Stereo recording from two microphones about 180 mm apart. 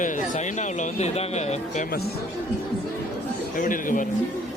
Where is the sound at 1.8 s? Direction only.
60° left (ahead or behind).